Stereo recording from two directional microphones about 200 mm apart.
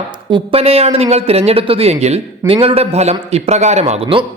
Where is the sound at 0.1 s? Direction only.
25° right (ahead or behind).